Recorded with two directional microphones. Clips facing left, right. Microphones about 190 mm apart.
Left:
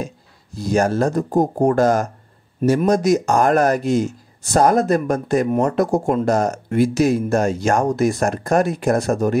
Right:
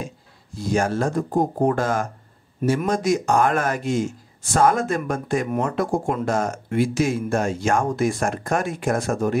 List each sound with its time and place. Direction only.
0.6 s speech: 40° left (ahead or behind)